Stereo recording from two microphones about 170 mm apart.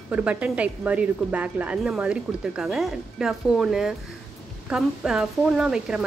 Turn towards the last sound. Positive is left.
turn(degrees=-5)  # may be behind; listen again after turning